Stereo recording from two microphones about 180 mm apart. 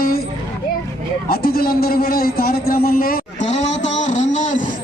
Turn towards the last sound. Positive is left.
turn(degrees=40)  # may be behind; listen again after turning